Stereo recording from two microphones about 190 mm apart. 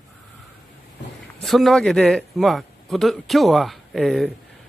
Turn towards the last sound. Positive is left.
turn(degrees=0)  # may be behind; listen again after turning